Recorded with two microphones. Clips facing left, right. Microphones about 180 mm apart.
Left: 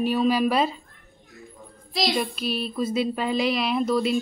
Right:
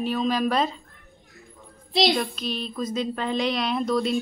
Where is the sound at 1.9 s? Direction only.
25° right (ahead or behind).